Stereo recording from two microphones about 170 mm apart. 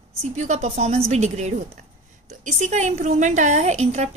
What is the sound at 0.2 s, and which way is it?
A woman's voice, 40° right (ahead or behind).